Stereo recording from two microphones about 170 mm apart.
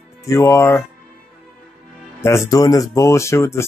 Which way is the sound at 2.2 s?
15° left (ahead or behind).